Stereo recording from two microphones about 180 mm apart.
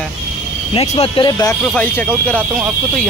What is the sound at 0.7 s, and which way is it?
Speech, 35° left (ahead or behind).